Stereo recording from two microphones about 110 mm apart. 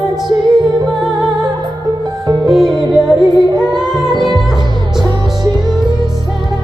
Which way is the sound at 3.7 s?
40° right (ahead or behind).